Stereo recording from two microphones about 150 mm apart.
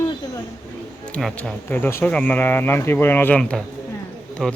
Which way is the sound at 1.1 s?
5° left (ahead or behind).